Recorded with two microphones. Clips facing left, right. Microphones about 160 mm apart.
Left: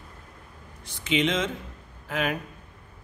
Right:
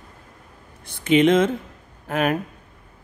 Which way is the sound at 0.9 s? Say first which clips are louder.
Right 9 dB; 55° right (ahead or behind).